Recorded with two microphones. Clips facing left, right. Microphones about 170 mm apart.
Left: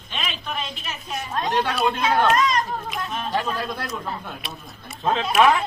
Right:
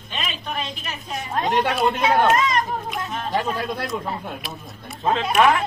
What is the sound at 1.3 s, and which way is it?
Speech, 15° right (ahead or behind).